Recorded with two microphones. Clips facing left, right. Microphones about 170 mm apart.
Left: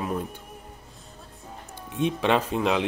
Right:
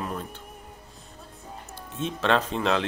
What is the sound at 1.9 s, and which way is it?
Speech, 15° left (ahead or behind).